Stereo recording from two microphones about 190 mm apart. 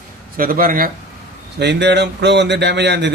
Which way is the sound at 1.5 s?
65° right (ahead or behind).